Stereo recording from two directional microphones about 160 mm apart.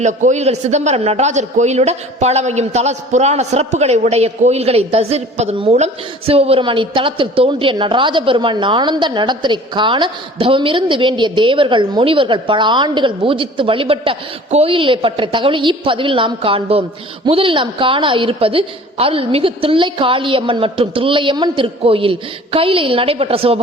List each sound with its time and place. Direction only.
0.0 s a man's voice: 50° right (ahead or behind)